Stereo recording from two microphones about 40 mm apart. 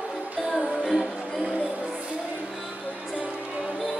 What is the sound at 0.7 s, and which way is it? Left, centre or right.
Music, centre.